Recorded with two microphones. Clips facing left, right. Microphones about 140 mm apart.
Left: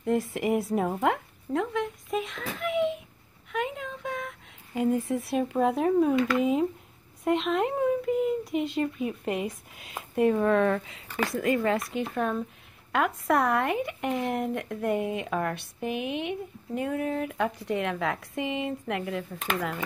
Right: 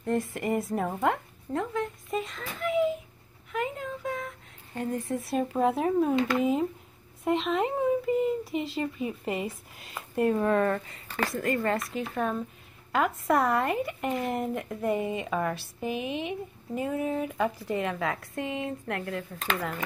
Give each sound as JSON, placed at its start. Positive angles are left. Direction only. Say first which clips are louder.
{"t": 0.0, "sound": "a child's voice", "louder": "left 2 dB", "side_deg": 0}
{"t": 3.5, "sound": "a sound", "louder": "even", "side_deg": 0}
{"t": 6.3, "sound": "speech", "louder": "left 1 dB", "side_deg": 0}